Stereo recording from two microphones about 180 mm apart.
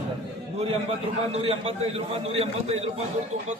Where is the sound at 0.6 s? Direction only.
35° right (ahead or behind).